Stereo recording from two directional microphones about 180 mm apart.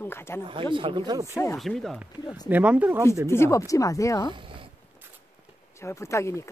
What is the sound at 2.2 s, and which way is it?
Speech, 20° left (ahead or behind).